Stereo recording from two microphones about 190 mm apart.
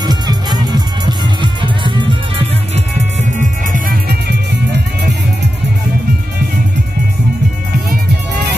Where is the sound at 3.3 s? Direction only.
40° right (ahead or behind).